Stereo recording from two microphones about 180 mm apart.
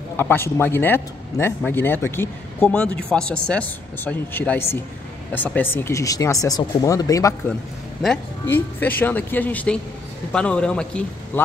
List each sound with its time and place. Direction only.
0.2 s speech: 10° left (ahead or behind)
8.0 s a man's voice: 5° left (ahead or behind)